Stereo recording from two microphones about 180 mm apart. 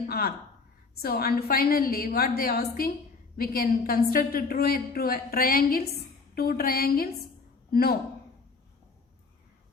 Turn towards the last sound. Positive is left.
turn(degrees=55)  # may be behind; listen again after turning